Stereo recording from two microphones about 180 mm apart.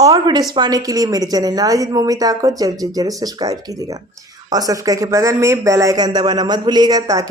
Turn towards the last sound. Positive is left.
turn(degrees=-20)  # may be behind; listen again after turning